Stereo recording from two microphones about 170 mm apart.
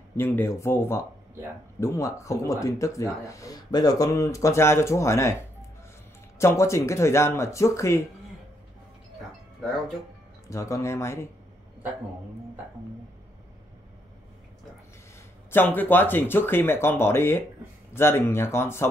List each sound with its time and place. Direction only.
0.2 s speech: 15° left (ahead or behind)
6.3 s speech: 15° left (ahead or behind)
10.5 s speech: 20° left (ahead or behind)
15.5 s speech: 10° left (ahead or behind)